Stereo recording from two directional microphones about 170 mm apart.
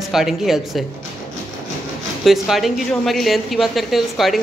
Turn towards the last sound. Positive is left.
turn(degrees=0)  # may be behind; listen again after turning